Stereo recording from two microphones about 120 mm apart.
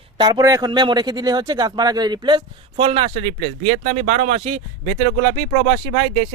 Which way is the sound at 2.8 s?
50° right (ahead or behind).